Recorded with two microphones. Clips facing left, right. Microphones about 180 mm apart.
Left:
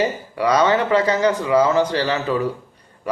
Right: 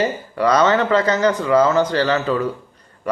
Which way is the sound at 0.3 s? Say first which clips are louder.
Right 1 dB; 10° left (ahead or behind).